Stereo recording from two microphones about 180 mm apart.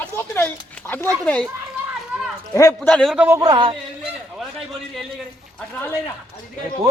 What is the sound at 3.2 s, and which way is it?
Speech, 20° right (ahead or behind).